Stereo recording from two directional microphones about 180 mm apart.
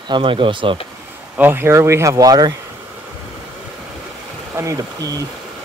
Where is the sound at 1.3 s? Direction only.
10° right (ahead or behind).